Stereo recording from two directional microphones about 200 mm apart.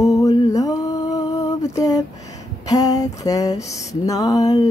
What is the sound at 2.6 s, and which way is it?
Mantra, 15° left (ahead or behind).